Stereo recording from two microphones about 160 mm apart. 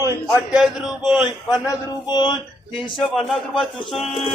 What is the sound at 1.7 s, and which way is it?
A man's voice, 25° left (ahead or behind).